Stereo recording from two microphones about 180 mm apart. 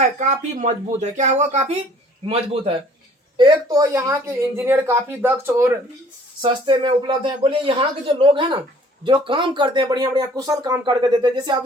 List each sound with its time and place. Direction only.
0.0 s a woman's voice: 40° right (ahead or behind); by 5.7 s 10° right (ahead or behind)
6.4 s speech: 30° right (ahead or behind)